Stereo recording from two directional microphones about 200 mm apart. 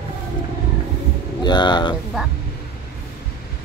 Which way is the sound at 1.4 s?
20° left (ahead or behind).